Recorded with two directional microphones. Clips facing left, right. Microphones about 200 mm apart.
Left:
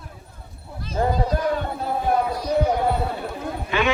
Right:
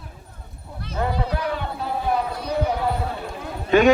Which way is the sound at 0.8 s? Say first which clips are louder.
Left 3 dB; 65° right (ahead or behind).